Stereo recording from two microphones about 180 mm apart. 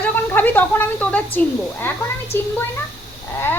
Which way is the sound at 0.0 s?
10° left (ahead or behind).